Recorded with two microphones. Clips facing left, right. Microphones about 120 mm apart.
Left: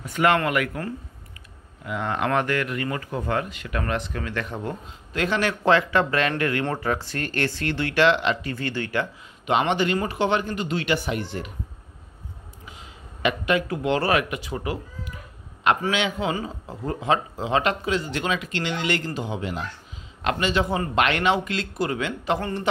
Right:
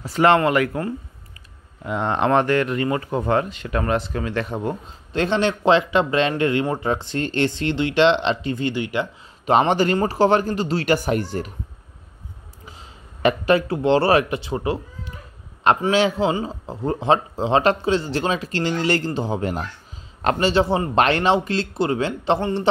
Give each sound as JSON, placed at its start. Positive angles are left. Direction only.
{"t": 0.0, "sound": "a man's voice", "side_deg": -30}
{"t": 1.9, "sound": "a man's voice", "side_deg": -25}
{"t": 9.5, "sound": "a man's voice", "side_deg": -40}
{"t": 13.2, "sound": "a man's voice", "side_deg": -35}